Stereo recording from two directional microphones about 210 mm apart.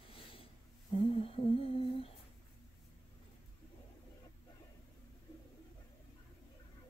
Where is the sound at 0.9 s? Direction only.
25° left (ahead or behind).